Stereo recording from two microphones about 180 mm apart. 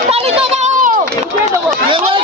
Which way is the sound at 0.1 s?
35° right (ahead or behind).